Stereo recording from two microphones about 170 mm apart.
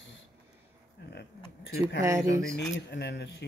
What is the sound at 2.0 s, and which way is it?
Speech, 20° right (ahead or behind).